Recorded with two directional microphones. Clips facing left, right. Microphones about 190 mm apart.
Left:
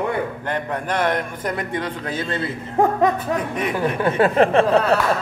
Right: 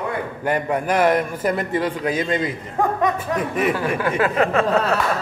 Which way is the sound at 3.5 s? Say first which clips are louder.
Right 1 dB; 5° right (ahead or behind).